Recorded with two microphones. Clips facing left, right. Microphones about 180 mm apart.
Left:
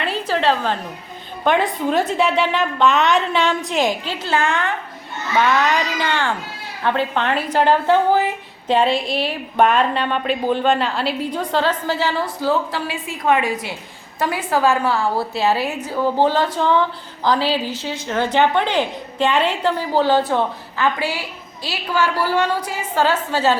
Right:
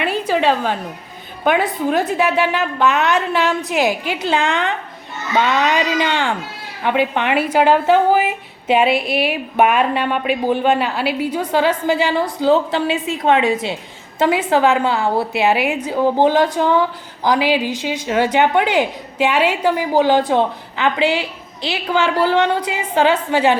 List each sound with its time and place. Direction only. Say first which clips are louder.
0.0 s a woman's voice: right 3 dB; 10° right (ahead or behind)